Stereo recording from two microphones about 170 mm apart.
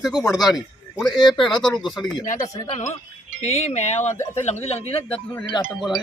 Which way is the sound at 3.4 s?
40° left (ahead or behind).